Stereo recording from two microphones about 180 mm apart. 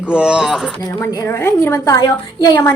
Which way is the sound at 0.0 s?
5° right (ahead or behind).